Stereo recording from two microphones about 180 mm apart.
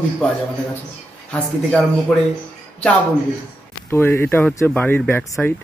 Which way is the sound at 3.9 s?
10° left (ahead or behind).